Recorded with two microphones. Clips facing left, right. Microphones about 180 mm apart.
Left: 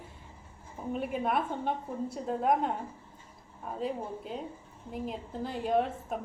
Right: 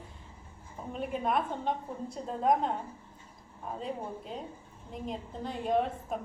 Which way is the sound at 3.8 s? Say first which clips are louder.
Left 4 dB; 5° left (ahead or behind).